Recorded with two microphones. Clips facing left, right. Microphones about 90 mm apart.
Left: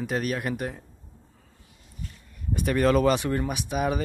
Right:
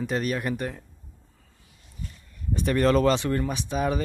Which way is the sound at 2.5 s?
5° left (ahead or behind).